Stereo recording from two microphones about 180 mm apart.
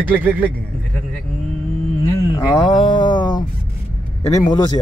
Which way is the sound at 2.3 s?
20° left (ahead or behind).